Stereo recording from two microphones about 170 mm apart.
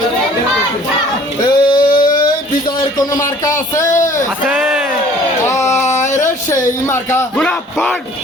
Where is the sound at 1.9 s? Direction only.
55° left (ahead or behind).